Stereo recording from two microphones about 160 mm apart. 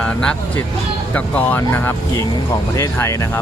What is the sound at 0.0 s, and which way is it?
Speech, 5° left (ahead or behind).